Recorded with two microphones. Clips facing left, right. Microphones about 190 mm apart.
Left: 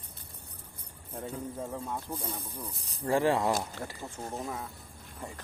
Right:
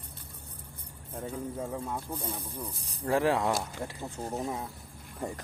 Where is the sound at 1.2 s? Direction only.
5° right (ahead or behind).